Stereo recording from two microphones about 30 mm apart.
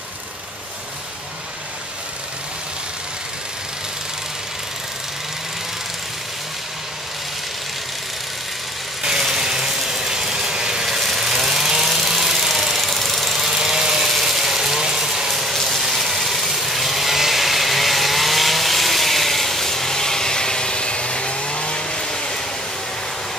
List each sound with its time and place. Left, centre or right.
9.0 s vehicle: centre
10.9 s vehicle: centre
11.9 s engine: centre
12.8 s engine knocking: centre
13.5 s engine: centre
14.2 s ratchet: centre
15.5 s a sound: centre
15.9 s a sound: centre; by 22.4 s left